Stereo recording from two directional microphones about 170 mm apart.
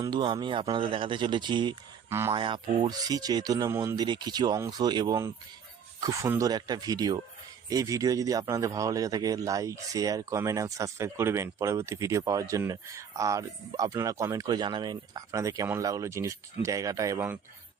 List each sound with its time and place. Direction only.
0.0 s a man's voice: 30° right (ahead or behind)
2.0 s speech: 15° right (ahead or behind)
2.3 s a man's voice: 30° right (ahead or behind); by 17.4 s 10° right (ahead or behind)